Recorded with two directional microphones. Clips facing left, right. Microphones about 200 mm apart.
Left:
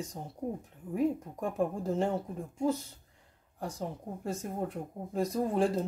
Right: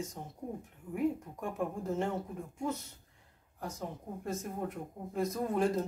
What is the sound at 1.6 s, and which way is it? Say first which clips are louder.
Speech: left 5 dB; 30° left (ahead or behind).